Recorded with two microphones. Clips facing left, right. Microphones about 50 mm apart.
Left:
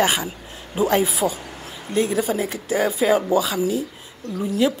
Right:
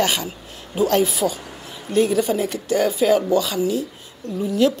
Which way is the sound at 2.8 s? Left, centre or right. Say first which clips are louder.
Right 1 dB; left.